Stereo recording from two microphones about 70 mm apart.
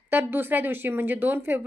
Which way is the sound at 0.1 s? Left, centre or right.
Right.